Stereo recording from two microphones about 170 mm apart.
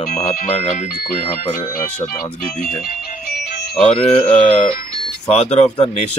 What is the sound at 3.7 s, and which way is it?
Speech, 5° left (ahead or behind).